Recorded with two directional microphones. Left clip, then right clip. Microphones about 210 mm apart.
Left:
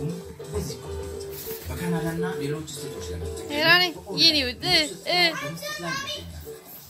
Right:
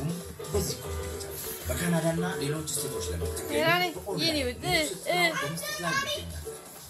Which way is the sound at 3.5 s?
20° left (ahead or behind).